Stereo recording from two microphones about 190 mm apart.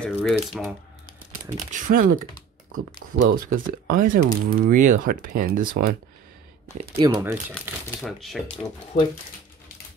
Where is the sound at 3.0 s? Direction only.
80° right.